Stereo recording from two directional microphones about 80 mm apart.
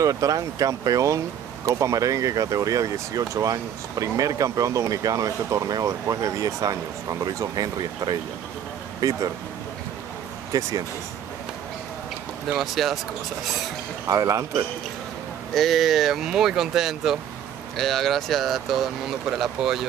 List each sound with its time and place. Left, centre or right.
0.0 s speech: right
9.0 s speech: right
10.5 s speech: right
12.5 s speech: centre
14.0 s speech: right
15.5 s speech: centre